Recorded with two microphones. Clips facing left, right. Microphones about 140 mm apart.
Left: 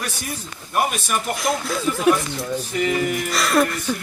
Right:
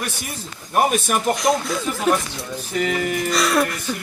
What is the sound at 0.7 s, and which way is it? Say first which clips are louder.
Speech: right 3 dB; 45° right (ahead or behind).